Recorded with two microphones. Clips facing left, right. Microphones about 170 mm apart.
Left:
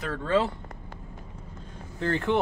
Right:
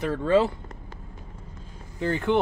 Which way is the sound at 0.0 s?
15° right (ahead or behind).